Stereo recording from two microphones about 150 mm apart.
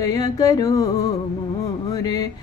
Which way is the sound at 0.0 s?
25° left (ahead or behind).